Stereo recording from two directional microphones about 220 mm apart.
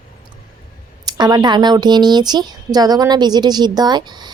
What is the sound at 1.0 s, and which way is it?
Speech, 20° right (ahead or behind).